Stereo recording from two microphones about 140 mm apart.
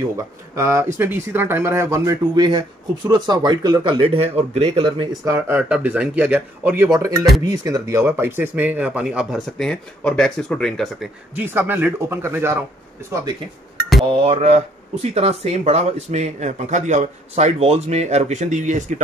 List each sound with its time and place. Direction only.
0.1 s speech: 20° right (ahead or behind); by 5.1 s 35° right (ahead or behind)
5.2 s speech: 15° right (ahead or behind)
6.9 s speech: 25° right (ahead or behind); by 9.4 s 5° right (ahead or behind)
9.6 s speech: 5° left (ahead or behind)
11.3 s speech: 15° right (ahead or behind)
14.2 s speech: 50° right (ahead or behind)